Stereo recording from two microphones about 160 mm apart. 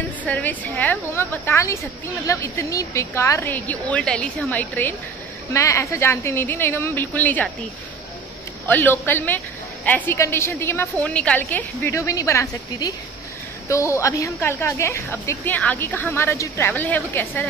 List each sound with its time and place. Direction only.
0.2 s a woman's voice: 10° left (ahead or behind)
8.6 s a woman's voice: 10° left (ahead or behind)